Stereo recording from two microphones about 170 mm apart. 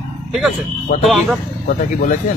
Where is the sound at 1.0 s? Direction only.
Centre (ahead or behind).